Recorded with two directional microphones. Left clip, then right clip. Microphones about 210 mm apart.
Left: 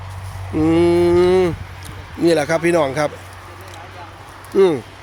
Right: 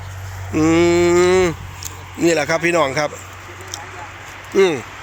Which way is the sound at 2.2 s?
10° left (ahead or behind).